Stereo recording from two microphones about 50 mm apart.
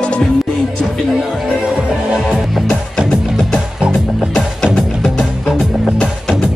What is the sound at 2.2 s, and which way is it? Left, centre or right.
Music, centre.